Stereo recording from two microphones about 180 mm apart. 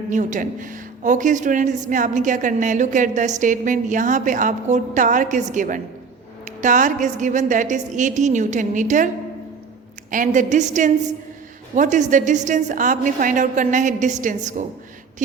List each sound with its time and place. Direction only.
0.1 s a woman's voice: 45° right (ahead or behind)
10.1 s a woman's voice: 45° right (ahead or behind)